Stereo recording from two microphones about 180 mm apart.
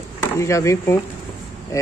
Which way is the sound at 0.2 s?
15° left (ahead or behind).